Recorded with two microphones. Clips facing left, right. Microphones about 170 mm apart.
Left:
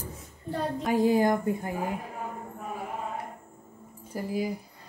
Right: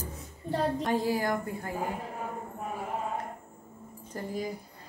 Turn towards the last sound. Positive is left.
turn(degrees=10)  # may be behind; listen again after turning